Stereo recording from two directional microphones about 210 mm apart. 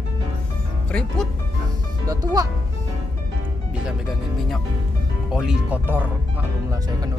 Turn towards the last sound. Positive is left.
turn(degrees=-5)  # may be behind; listen again after turning